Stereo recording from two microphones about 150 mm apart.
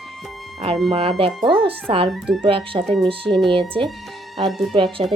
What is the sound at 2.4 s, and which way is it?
Speech, 35° right (ahead or behind).